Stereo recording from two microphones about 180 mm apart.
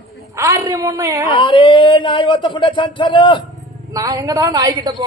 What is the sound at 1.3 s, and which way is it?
Speech, 30° left (ahead or behind).